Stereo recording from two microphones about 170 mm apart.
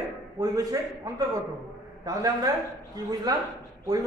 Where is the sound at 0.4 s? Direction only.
20° right (ahead or behind).